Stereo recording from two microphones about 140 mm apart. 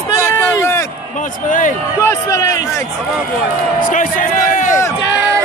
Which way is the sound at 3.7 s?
80° left.